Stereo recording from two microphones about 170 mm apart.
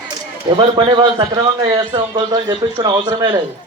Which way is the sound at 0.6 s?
30° right (ahead or behind).